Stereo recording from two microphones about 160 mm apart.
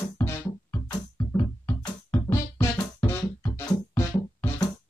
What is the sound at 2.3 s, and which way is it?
Music, 15° left (ahead or behind).